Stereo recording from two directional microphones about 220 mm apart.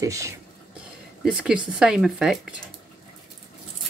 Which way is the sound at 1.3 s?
5° right (ahead or behind).